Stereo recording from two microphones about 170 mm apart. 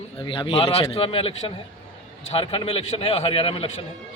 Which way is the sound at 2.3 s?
35° left (ahead or behind).